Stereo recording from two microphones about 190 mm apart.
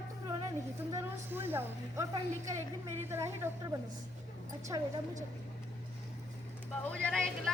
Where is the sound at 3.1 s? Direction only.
10° right (ahead or behind).